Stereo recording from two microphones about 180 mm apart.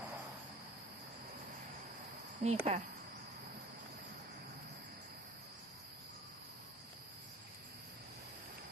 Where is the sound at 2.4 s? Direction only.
45° right (ahead or behind).